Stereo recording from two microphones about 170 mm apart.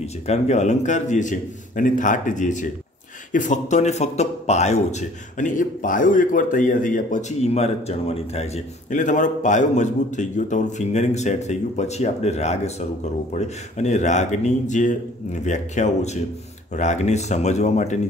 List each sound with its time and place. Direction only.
0.0 s a man's voice: 40° left (ahead or behind)
8.9 s a man's voice: 50° left (ahead or behind)